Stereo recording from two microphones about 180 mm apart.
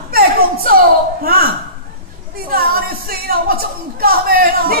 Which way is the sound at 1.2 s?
55° right (ahead or behind).